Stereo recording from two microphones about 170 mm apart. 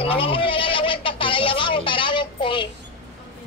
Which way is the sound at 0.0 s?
35° left (ahead or behind).